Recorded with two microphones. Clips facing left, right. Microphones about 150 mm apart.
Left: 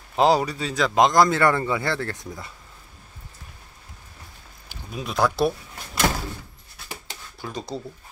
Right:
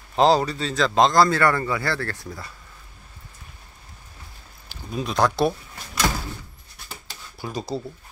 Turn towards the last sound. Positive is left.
turn(degrees=-10)  # may be behind; listen again after turning